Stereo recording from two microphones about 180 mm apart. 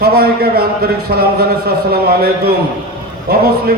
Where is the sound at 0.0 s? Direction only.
60° right (ahead or behind).